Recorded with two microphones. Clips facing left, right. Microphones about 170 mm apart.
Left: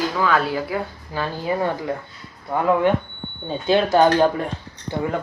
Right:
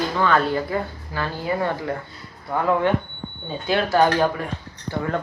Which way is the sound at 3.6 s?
20° left (ahead or behind).